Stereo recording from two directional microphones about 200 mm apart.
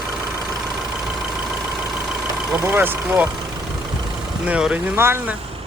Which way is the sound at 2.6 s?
10° right (ahead or behind).